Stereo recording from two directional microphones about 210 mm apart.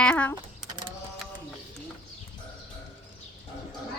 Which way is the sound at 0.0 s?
5° left (ahead or behind).